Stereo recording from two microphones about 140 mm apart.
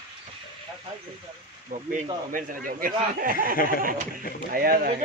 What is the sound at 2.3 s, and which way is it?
Speech, 80° right.